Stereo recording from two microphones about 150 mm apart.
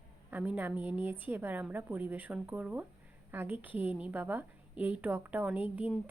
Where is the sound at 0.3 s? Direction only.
10° right (ahead or behind).